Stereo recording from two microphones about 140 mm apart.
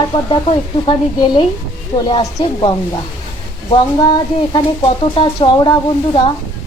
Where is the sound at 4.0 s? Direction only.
30° left (ahead or behind).